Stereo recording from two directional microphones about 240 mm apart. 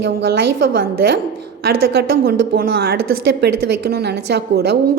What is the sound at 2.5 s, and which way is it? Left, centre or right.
A woman's voice, right.